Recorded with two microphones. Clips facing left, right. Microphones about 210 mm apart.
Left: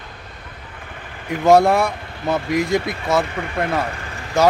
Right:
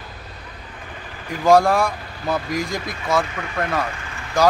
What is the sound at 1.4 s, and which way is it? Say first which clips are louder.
Speech: left 2 dB; 20° left (ahead or behind).